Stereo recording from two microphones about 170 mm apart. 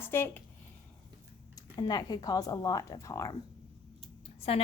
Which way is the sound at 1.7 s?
25° left (ahead or behind).